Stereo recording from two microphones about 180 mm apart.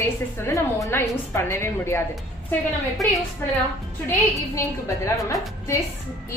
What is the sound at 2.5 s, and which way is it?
Speech, centre (ahead or behind).